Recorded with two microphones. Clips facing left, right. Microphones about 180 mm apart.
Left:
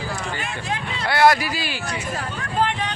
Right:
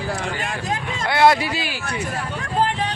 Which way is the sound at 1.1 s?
20° right (ahead or behind).